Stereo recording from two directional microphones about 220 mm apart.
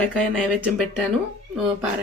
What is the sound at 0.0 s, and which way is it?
Speech, 5° left (ahead or behind).